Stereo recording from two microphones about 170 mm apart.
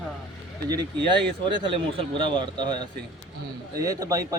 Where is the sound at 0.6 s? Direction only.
25° right (ahead or behind).